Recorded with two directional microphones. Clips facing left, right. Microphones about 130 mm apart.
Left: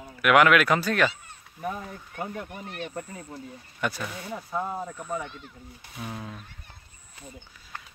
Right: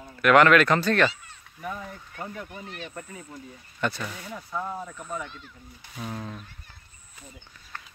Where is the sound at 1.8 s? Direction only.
15° left (ahead or behind).